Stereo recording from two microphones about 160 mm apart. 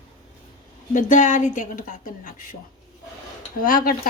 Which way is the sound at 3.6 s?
60° left (ahead or behind).